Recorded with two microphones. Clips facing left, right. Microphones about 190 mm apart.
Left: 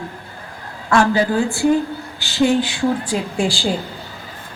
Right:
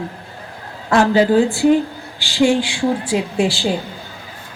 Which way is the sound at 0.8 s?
35° right (ahead or behind).